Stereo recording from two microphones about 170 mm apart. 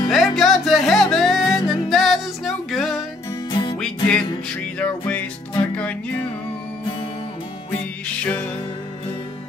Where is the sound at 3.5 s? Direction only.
30° left (ahead or behind).